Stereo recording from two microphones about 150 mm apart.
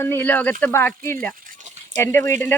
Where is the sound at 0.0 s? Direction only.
15° left (ahead or behind).